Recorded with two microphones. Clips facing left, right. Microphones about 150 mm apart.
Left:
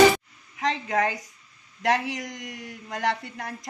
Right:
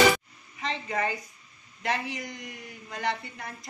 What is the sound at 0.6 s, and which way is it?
A woman's voice, 85° left.